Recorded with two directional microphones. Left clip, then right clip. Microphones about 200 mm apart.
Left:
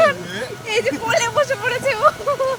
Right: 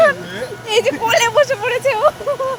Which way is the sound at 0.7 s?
25° right (ahead or behind).